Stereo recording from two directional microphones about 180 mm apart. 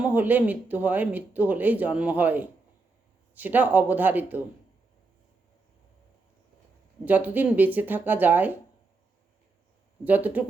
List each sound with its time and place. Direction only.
0.0 s speech: 10° right (ahead or behind)
7.0 s speech: 10° right (ahead or behind)
10.0 s speech: 10° right (ahead or behind)